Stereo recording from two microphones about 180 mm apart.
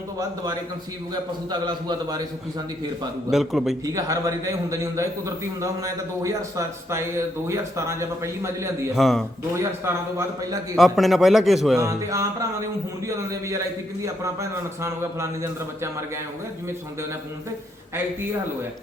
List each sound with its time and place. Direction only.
1.1 s a man's voice: 25° right (ahead or behind)
3.2 s a man's voice: centre (ahead or behind)
3.8 s a man's voice: 20° right (ahead or behind)
9.0 s a man's voice: centre (ahead or behind)
9.6 s a man's voice: 15° right (ahead or behind)
10.8 s a man's voice: centre (ahead or behind)
11.8 s a man's voice: 20° right (ahead or behind)